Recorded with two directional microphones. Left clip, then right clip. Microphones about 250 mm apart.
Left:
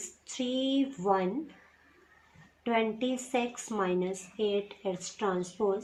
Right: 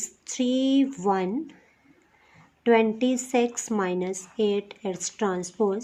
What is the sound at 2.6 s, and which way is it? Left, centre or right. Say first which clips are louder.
A woman's voice: right 9 dB; right.